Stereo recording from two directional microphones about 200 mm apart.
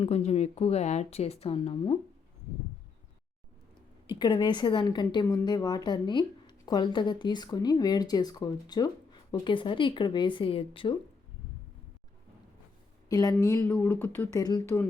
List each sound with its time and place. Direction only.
0.0 s speech: 30° left (ahead or behind)
4.1 s speech: 20° left (ahead or behind)
13.1 s speech: 20° left (ahead or behind)